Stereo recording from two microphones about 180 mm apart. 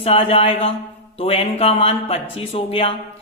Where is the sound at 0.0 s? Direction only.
30° left (ahead or behind).